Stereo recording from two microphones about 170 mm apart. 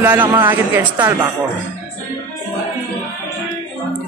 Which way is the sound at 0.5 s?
10° right (ahead or behind).